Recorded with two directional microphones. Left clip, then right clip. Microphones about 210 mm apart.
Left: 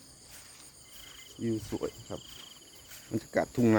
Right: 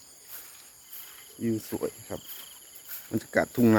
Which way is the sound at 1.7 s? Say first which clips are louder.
Right 3 dB; 15° right (ahead or behind).